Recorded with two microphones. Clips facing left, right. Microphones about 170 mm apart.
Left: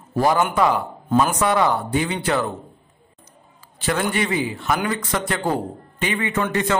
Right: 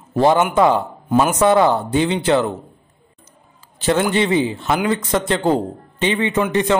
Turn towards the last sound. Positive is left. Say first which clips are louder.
# right 4 dB
turn(degrees=-20)  # may be behind; listen again after turning